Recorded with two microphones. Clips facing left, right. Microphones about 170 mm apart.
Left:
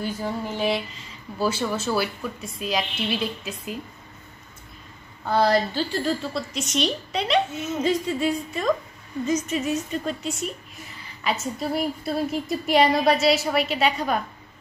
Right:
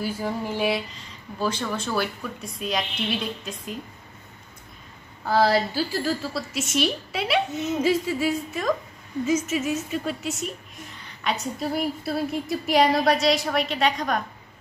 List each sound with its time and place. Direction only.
0.0 s a woman's voice: 10° right (ahead or behind)
5.2 s a woman's voice: 5° right (ahead or behind)
7.6 s a sound: 15° right (ahead or behind)
7.9 s a woman's voice: 5° right (ahead or behind)